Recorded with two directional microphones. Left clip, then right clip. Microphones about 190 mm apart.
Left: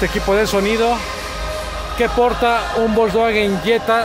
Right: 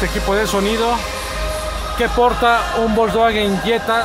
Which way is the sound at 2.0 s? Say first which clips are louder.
Even; 15° left (ahead or behind).